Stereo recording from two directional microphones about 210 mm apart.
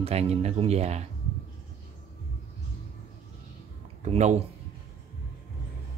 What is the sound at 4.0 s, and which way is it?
Speech, 35° right (ahead or behind).